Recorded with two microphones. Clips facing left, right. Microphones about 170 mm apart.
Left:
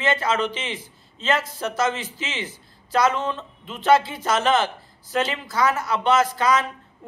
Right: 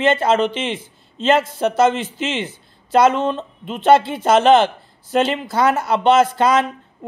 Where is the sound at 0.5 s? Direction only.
60° right (ahead or behind).